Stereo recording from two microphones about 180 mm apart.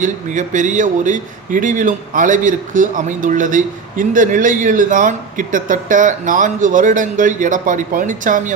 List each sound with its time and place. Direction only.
0.0 s a man's voice: 45° right (ahead or behind)